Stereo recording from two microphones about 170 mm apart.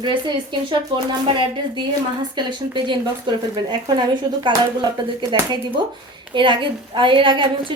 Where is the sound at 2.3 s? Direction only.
25° right (ahead or behind).